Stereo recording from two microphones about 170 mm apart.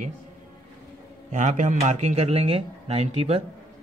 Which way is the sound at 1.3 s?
45° right (ahead or behind).